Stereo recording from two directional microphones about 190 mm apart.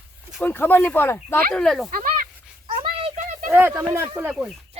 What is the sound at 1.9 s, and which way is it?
Speech, 45° right (ahead or behind).